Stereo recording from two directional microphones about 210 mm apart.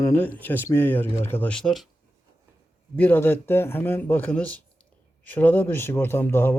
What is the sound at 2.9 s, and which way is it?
Speech, 10° left (ahead or behind).